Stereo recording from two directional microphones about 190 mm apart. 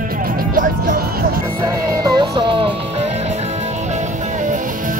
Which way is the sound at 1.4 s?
15° right (ahead or behind).